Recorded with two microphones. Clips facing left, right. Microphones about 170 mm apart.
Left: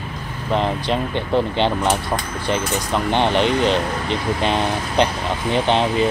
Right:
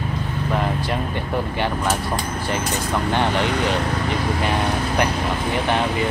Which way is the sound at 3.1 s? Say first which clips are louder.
Left 4 dB; 20° left (ahead or behind).